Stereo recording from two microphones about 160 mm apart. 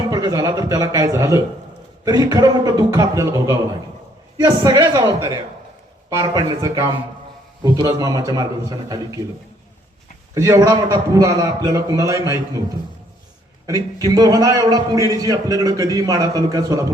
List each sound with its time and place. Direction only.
0.1 s a man's voice: 20° right (ahead or behind)
10.3 s a man's voice: 20° right (ahead or behind)
13.7 s a man's voice: 25° right (ahead or behind)